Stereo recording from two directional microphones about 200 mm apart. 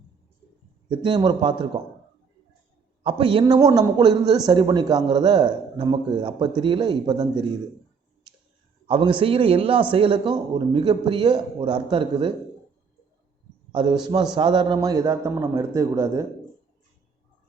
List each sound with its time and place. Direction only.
0.9 s a man's voice: 20° right (ahead or behind)
3.0 s a man's voice: 25° right (ahead or behind)
8.9 s a man's voice: 25° right (ahead or behind)
13.7 s a man's voice: 20° right (ahead or behind)